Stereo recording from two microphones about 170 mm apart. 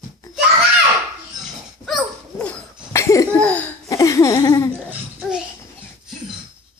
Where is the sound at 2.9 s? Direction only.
15° left (ahead or behind).